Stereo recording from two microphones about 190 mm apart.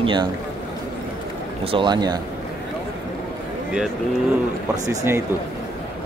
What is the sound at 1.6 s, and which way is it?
Speech, 25° right (ahead or behind).